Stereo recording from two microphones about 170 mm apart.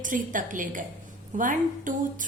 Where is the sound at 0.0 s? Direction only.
50° right (ahead or behind).